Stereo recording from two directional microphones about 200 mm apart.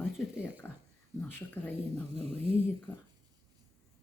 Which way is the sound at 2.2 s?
30° right (ahead or behind).